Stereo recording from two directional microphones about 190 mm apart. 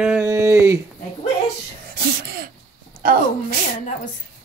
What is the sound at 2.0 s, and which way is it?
Throat clearing, 55° right (ahead or behind).